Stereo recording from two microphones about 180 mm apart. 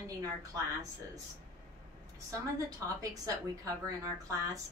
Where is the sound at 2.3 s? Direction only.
20° right (ahead or behind).